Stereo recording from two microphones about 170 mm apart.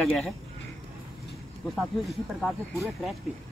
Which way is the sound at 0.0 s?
5° left (ahead or behind).